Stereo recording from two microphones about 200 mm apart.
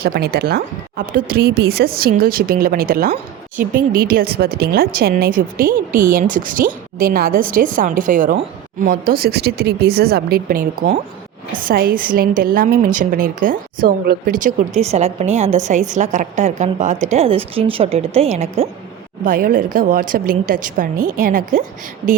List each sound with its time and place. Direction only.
0.0 s a woman's voice: 50° right (ahead or behind); by 18.7 s 30° right (ahead or behind)
19.2 s speech: 45° right (ahead or behind)